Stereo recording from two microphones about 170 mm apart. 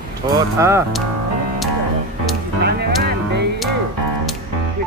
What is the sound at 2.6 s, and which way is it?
Music, 75° right (ahead or behind).